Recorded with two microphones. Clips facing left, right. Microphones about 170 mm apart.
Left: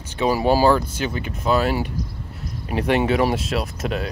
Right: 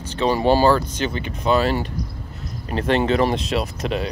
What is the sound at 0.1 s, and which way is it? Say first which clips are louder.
Speech: right 1 dB; 5° left (ahead or behind).